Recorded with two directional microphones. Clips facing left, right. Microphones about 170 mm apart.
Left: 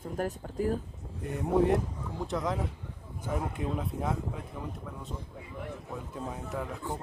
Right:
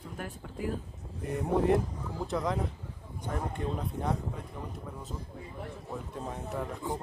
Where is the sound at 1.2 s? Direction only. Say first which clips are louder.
Left 2 dB; centre (ahead or behind).